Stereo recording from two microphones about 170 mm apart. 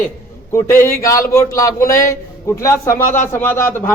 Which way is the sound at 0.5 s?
15° left (ahead or behind).